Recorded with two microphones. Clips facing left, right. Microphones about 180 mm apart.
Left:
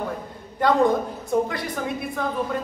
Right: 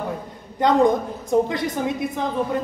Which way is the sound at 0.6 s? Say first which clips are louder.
Right 2 dB; 20° right (ahead or behind).